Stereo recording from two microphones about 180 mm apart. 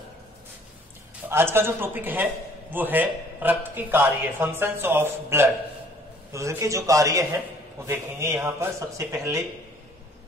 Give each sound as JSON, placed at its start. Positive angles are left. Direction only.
{"t": 1.3, "sound": "speech", "side_deg": -15}